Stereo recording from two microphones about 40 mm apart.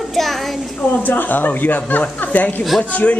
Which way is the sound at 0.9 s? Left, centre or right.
Left.